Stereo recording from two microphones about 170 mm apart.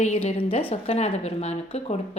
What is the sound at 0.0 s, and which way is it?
A woman's voice, 40° left (ahead or behind).